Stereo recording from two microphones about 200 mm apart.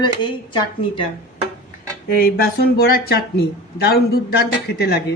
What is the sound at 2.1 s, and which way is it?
Speech, 50° left (ahead or behind).